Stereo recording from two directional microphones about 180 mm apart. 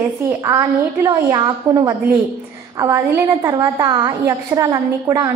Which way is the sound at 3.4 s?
20° right (ahead or behind).